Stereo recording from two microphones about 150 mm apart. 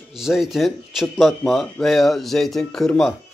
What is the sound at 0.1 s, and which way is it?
Speech, centre (ahead or behind).